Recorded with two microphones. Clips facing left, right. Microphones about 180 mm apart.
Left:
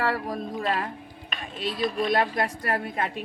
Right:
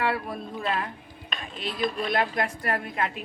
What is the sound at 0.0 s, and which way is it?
Speech, 40° left (ahead or behind).